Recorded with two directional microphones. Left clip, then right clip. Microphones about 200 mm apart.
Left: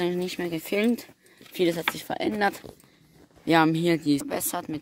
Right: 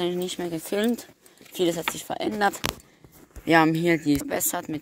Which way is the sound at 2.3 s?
Centre (ahead or behind).